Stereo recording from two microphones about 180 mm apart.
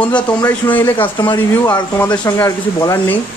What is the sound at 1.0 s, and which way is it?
Speech, 25° left (ahead or behind).